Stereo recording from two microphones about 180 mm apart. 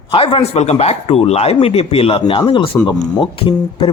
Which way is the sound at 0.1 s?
30° left (ahead or behind).